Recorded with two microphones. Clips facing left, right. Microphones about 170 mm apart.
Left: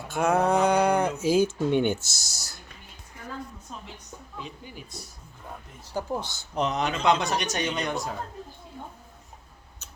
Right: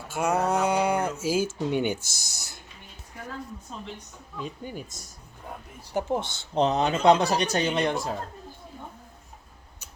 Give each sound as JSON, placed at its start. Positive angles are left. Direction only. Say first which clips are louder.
{"t": 0.1, "sound": "a sound", "louder": "left 2 dB", "side_deg": -5}
{"t": 1.2, "sound": "speech", "louder": "left 4 dB", "side_deg": -5}
{"t": 4.4, "sound": "speech", "louder": "right 6 dB", "side_deg": -45}
{"t": 5.9, "sound": "speech", "louder": "right 3 dB", "side_deg": -20}